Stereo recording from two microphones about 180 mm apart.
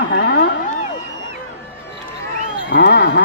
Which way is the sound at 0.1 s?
85° left.